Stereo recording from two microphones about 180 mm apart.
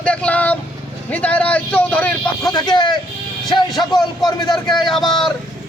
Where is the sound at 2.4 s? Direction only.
25° left (ahead or behind).